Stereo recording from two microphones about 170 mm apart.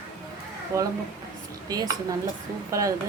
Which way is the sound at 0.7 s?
20° right (ahead or behind).